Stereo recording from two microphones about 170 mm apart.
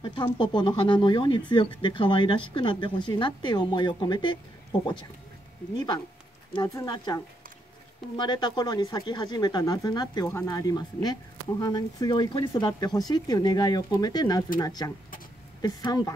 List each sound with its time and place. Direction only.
0.0 s speech: 30° left (ahead or behind)
6.5 s speech: 20° left (ahead or behind)
8.2 s speech: 25° left (ahead or behind)